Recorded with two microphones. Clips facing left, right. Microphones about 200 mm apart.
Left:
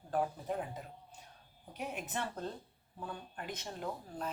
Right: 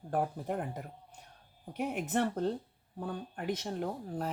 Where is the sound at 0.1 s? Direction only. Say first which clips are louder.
Right 2 dB; 55° right (ahead or behind).